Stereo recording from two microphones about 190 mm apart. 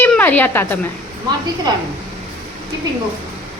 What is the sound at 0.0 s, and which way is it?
Speech, 10° left (ahead or behind).